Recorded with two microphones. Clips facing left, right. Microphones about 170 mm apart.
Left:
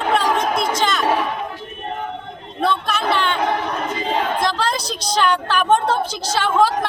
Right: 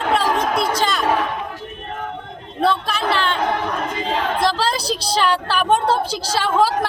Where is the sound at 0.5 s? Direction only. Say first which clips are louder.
Right 1 dB; 30° right (ahead or behind).